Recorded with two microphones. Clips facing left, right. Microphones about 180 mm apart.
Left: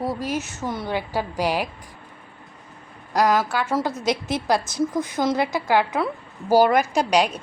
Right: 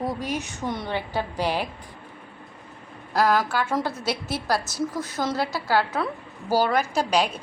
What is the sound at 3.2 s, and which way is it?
Speech, 5° left (ahead or behind).